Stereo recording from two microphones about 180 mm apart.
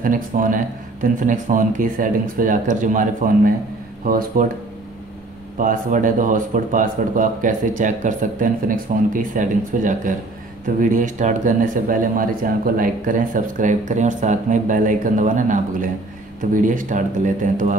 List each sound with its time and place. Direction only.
0.0 s speech: 50° right (ahead or behind)
5.6 s speech: 45° right (ahead or behind)